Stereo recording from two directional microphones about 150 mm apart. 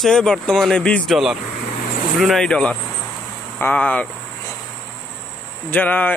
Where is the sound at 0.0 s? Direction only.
5° left (ahead or behind).